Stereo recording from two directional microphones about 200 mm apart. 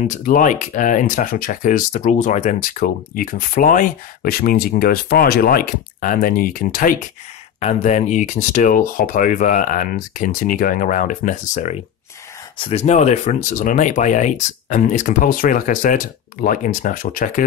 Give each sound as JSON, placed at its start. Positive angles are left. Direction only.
{"t": 0.0, "sound": "speech", "side_deg": 40}